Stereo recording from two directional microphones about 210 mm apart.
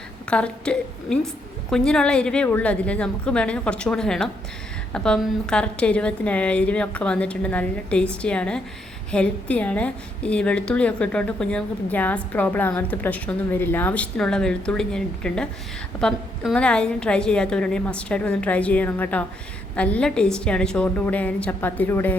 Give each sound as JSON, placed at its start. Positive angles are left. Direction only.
{"t": 0.3, "sound": "a woman's voice", "side_deg": 5}